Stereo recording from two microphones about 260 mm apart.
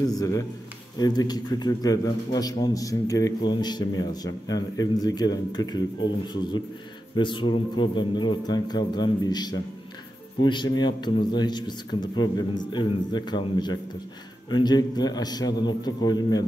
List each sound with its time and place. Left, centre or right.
0.1 s a man's voice: centre